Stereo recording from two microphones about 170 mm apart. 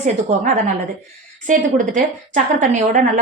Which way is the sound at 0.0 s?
45° right (ahead or behind).